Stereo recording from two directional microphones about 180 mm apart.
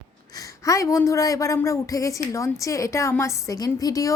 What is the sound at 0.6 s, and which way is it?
A woman's voice, 15° left (ahead or behind).